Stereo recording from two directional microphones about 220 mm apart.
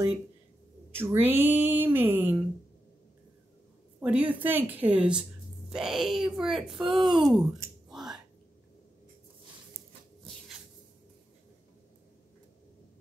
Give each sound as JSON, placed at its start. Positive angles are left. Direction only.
{"t": 0.9, "sound": "speech", "side_deg": -10}
{"t": 4.0, "sound": "speech", "side_deg": -5}
{"t": 7.9, "sound": "finger snapping", "side_deg": 0}